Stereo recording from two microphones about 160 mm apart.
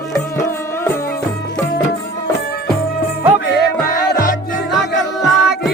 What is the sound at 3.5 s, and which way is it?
Music, 75° left (ahead or behind).